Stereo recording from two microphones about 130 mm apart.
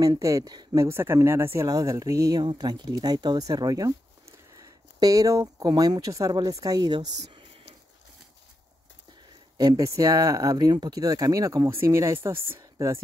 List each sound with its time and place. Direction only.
0.0 s speech: 25° right (ahead or behind)
0.8 s speech: 20° right (ahead or behind)
9.6 s speech: 30° right (ahead or behind)